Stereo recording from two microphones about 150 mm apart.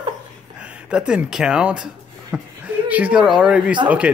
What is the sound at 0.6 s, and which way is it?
Speech, 5° right (ahead or behind).